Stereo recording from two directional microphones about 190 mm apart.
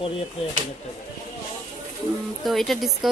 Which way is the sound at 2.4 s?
Centre (ahead or behind).